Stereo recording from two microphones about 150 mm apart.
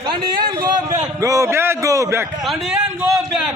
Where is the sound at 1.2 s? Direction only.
20° right (ahead or behind).